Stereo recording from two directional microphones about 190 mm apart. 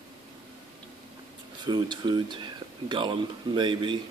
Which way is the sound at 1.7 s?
25° right (ahead or behind).